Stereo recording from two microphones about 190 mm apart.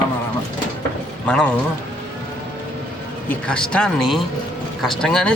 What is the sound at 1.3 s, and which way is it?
Speech, 5° left (ahead or behind).